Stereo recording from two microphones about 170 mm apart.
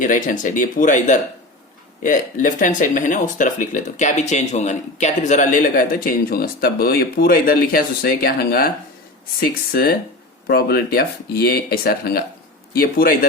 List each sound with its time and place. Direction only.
0.0 s speech: 50° left (ahead or behind)